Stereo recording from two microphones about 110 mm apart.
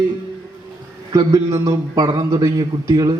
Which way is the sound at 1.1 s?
30° right (ahead or behind).